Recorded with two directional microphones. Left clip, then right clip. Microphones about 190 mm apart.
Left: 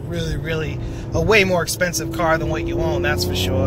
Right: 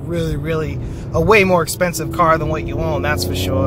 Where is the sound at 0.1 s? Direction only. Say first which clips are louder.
Right 4 dB; 50° right (ahead or behind).